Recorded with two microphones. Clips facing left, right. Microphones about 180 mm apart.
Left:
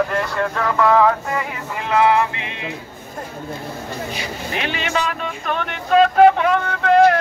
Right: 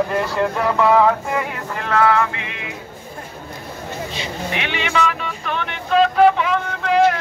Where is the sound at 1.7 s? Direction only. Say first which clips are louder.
Left 1 dB; 15° left (ahead or behind).